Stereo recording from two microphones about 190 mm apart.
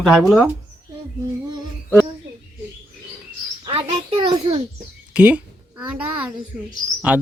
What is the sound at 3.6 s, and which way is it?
Speech, 30° right (ahead or behind).